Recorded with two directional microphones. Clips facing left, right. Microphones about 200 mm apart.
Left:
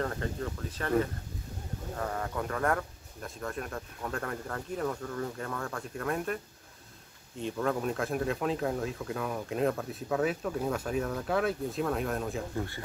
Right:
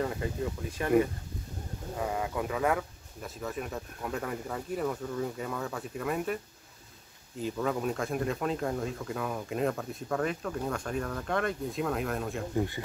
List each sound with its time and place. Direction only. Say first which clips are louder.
0.0 s speech: right 2 dB; 10° right (ahead or behind)
12.5 s speech: right 5 dB; 15° right (ahead or behind)